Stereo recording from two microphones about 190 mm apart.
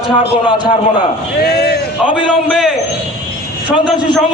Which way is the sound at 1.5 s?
55° left (ahead or behind).